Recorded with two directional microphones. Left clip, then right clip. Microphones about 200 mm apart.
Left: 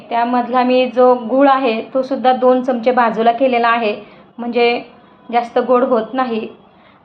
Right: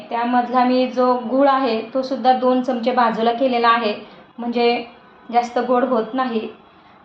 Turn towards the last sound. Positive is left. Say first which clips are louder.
# left 4 dB
turn(degrees=25)  # may be behind; listen again after turning